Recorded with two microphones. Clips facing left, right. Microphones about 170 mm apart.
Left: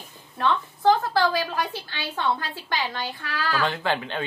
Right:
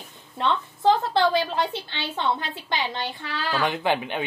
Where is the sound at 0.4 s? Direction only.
25° right (ahead or behind).